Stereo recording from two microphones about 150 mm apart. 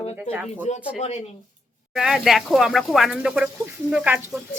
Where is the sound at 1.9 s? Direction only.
Centre (ahead or behind).